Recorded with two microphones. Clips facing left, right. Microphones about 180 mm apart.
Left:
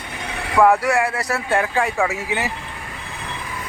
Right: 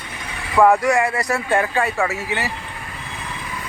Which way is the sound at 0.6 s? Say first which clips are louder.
Right 1 dB; 5° left (ahead or behind).